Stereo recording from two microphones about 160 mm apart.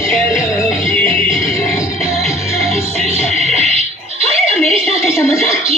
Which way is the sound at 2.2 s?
Centre (ahead or behind).